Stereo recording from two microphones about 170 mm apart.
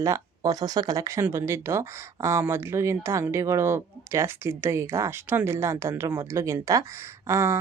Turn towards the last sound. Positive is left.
turn(degrees=-15)  # may be behind; listen again after turning